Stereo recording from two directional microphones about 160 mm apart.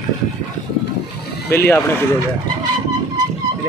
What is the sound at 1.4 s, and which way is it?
Speech, 15° left (ahead or behind).